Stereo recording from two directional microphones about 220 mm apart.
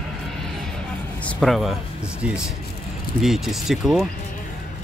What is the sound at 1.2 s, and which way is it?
Speech, centre (ahead or behind).